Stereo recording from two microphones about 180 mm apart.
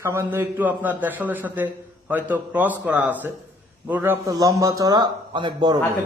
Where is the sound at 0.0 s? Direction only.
15° right (ahead or behind).